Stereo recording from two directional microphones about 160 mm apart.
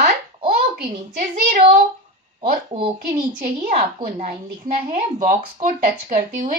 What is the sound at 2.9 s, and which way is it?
A woman's voice, 55° right (ahead or behind).